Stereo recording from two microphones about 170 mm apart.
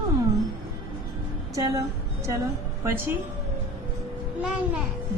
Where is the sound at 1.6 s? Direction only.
20° right (ahead or behind).